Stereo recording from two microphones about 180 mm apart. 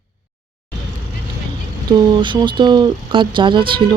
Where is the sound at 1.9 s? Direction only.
25° right (ahead or behind).